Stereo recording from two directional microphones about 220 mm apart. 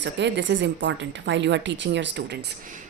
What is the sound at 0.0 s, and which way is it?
Speech, 55° right (ahead or behind).